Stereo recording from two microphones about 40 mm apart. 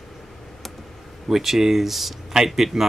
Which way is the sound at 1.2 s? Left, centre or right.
Centre.